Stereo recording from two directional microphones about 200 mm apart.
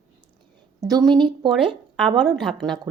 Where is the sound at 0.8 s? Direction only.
15° right (ahead or behind).